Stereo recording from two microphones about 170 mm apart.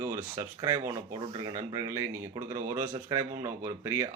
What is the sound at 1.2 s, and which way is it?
Speech, 30° right (ahead or behind).